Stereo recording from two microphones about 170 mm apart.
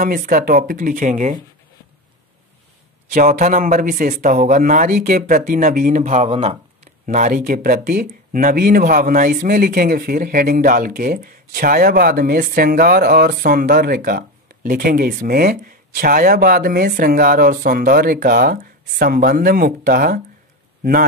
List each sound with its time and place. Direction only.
0.0 s a man's voice: 50° right (ahead or behind)
3.1 s a man's voice: 50° right (ahead or behind)
7.1 s speech: 50° right (ahead or behind)